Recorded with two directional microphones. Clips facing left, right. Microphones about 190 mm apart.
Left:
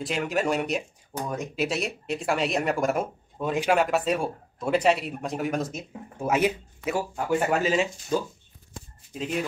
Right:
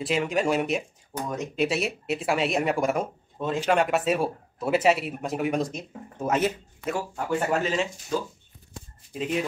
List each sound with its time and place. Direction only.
0.0 s speech: centre (ahead or behind)
3.8 s speech: centre (ahead or behind)
9.1 s speech: centre (ahead or behind)